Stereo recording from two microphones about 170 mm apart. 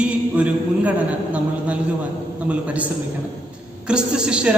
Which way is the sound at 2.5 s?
10° right (ahead or behind).